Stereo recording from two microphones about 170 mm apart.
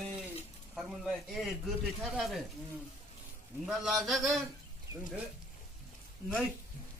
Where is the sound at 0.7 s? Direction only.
Centre (ahead or behind).